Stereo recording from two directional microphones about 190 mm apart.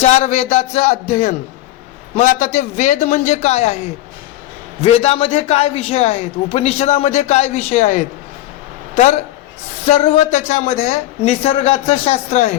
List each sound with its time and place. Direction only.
0.0 s a man's voice: 35° left (ahead or behind)
4.8 s a man's voice: 30° left (ahead or behind)
9.8 s a man's voice: 30° left (ahead or behind)